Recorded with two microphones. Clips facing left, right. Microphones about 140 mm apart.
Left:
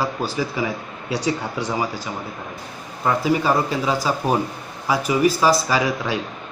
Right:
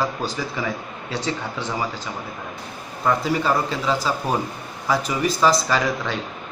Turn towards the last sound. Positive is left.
turn(degrees=10)  # may be behind; listen again after turning